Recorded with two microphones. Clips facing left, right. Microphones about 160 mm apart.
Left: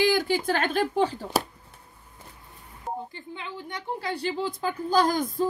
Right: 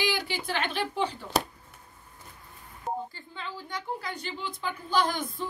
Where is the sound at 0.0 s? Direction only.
45° left (ahead or behind).